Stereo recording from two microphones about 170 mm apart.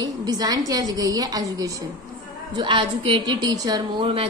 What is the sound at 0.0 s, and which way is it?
A woman's voice, 25° right (ahead or behind).